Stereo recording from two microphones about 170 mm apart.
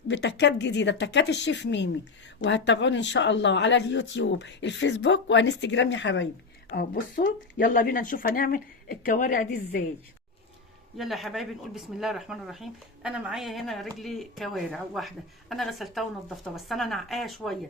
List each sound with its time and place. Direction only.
0.1 s speech: 90° left
6.7 s speech: 55° left (ahead or behind)
10.9 s speech: centre (ahead or behind)